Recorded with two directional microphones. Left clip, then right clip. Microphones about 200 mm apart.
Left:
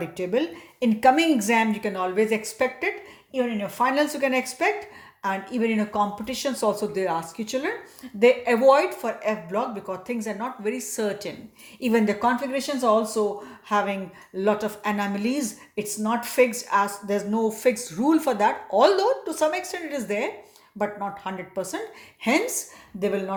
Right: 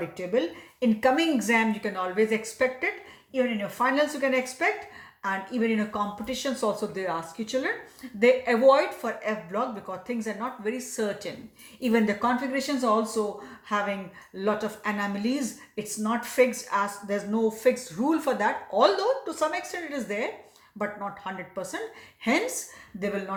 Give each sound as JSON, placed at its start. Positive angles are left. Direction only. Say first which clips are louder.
{"t": 0.0, "sound": "a woman's voice", "louder": "left 2 dB", "side_deg": 45}